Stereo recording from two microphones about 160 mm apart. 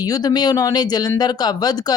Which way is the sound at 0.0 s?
25° left (ahead or behind).